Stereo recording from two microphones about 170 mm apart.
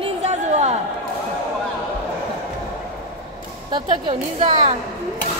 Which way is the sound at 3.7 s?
30° right (ahead or behind).